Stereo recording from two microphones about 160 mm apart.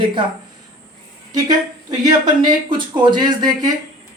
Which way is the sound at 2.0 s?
30° right (ahead or behind).